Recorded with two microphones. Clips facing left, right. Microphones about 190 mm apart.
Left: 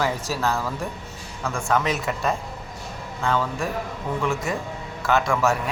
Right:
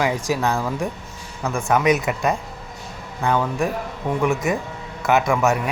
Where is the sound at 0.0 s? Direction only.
15° right (ahead or behind).